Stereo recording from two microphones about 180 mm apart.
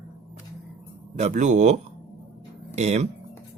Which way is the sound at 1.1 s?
40° right (ahead or behind).